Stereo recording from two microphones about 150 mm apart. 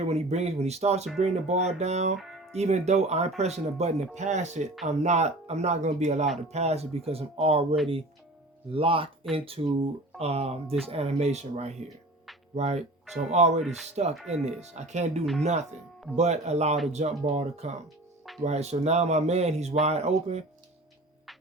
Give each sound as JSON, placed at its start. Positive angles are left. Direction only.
{"t": 0.0, "sound": "speech", "side_deg": -45}
{"t": 2.1, "sound": "speech", "side_deg": 0}
{"t": 2.5, "sound": "speech", "side_deg": -45}